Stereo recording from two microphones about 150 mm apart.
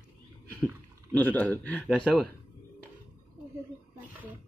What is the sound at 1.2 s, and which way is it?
Mantra, 10° left (ahead or behind).